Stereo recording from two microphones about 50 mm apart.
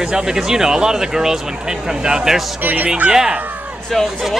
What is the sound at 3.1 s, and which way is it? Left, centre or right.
Speech, centre.